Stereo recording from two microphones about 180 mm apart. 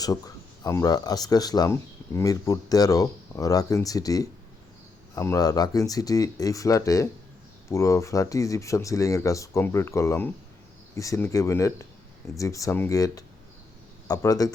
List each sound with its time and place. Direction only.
0.0 s speech: 20° left (ahead or behind)